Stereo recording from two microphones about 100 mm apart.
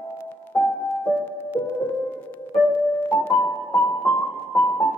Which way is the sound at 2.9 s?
20° left (ahead or behind).